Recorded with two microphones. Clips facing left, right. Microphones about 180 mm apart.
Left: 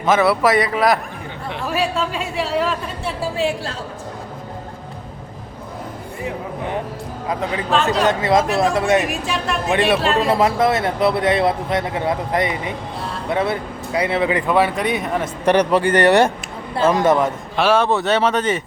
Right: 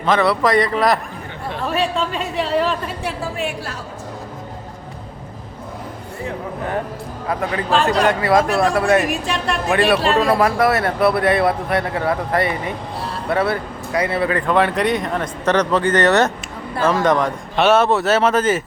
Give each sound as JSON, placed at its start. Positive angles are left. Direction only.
{"t": 0.0, "sound": "a woman's voice", "side_deg": 5}
{"t": 7.4, "sound": "speech", "side_deg": 20}
{"t": 9.0, "sound": "a woman's voice", "side_deg": 0}
{"t": 10.3, "sound": "speech", "side_deg": 20}
{"t": 16.7, "sound": "speech", "side_deg": 25}
{"t": 17.0, "sound": "a woman's voice", "side_deg": 5}